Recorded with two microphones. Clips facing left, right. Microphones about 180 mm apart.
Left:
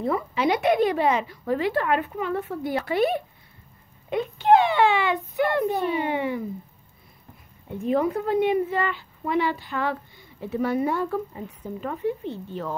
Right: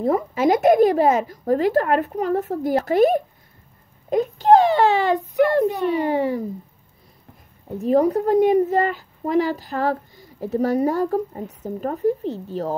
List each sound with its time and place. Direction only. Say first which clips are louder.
0.0 s a woman's voice: right 5 dB; 45° right (ahead or behind)
7.6 s speech: right 5 dB; 40° right (ahead or behind)